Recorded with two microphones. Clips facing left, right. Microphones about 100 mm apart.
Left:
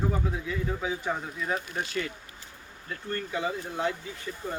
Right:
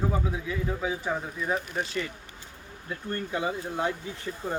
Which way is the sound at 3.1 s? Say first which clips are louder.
Right 1 dB; 15° right (ahead or behind).